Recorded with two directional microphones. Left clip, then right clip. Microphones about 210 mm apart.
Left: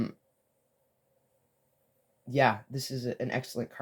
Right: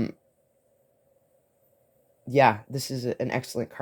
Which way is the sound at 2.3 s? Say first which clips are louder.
Right 6 dB; 40° right (ahead or behind).